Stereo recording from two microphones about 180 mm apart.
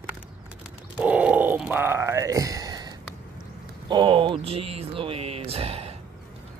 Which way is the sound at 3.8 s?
25° right (ahead or behind).